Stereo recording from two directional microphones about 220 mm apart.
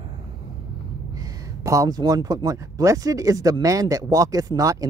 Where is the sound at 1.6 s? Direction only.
15° right (ahead or behind).